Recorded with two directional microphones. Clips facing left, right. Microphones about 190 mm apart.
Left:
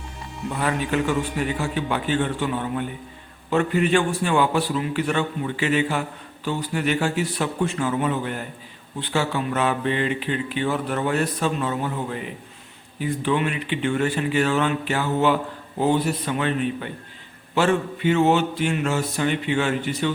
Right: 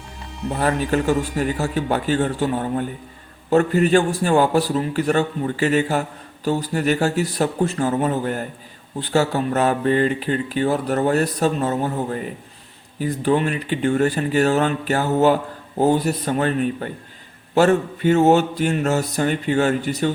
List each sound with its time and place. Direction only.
0.5 s a man's voice: 40° right (ahead or behind)